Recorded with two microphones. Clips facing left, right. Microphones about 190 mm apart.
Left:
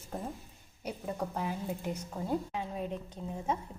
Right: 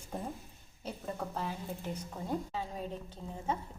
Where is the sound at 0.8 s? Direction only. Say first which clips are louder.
Left 3 dB; 15° left (ahead or behind).